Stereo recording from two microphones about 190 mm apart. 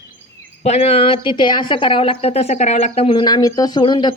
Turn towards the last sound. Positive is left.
turn(degrees=25)  # may be behind; listen again after turning